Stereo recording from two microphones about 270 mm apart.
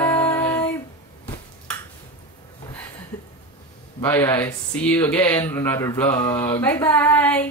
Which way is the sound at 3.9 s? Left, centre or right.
Centre.